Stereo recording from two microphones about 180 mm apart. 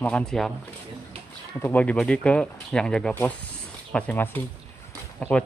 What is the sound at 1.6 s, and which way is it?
Speech, 10° left (ahead or behind).